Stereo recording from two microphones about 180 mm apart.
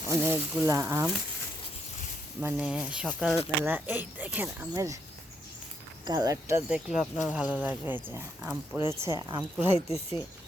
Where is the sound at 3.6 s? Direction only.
10° right (ahead or behind).